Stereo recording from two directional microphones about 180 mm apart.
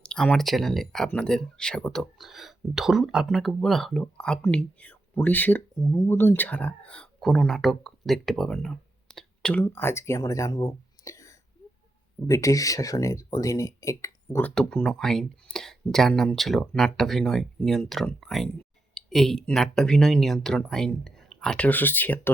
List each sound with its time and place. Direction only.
0.0 s speech: 5° left (ahead or behind)
14.5 s speech: 5° left (ahead or behind)